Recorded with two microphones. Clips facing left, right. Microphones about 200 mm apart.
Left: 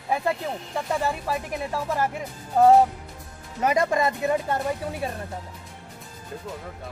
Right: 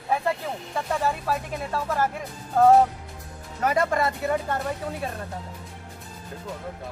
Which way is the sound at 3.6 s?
15° left (ahead or behind).